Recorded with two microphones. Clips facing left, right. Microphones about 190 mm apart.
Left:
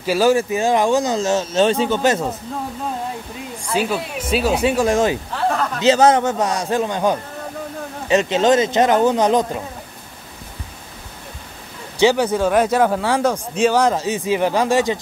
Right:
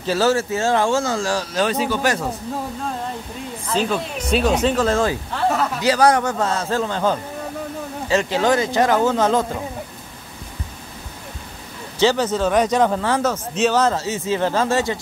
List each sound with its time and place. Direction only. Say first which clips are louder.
0.0 s speech: left 3 dB; 15° left (ahead or behind)
3.6 s speech: left 1 dB; 10° left (ahead or behind)
5.3 s speech: even; centre (ahead or behind)
5.8 s speech: left 4 dB; 25° left (ahead or behind)
12.0 s speech: left 2 dB; 15° left (ahead or behind)